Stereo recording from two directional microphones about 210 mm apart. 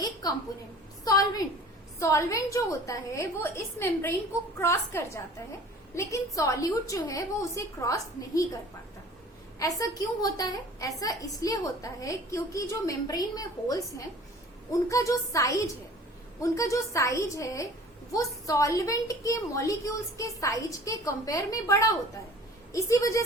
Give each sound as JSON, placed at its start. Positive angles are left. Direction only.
{"t": 0.0, "sound": "a sound", "side_deg": 20}
{"t": 1.0, "sound": "a woman's voice", "side_deg": 15}
{"t": 9.6, "sound": "a woman's voice", "side_deg": 15}